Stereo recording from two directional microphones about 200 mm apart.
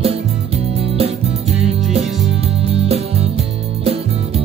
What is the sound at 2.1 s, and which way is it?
Music, 65° right (ahead or behind).